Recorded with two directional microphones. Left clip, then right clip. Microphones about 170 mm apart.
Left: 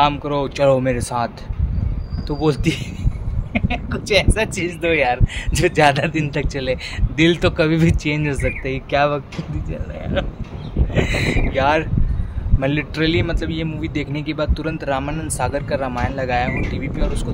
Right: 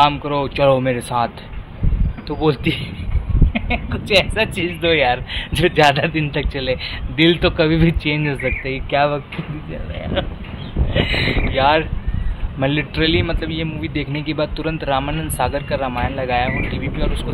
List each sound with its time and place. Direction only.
0.0 s speech: 20° left (ahead or behind)
11.5 s speech: 10° left (ahead or behind)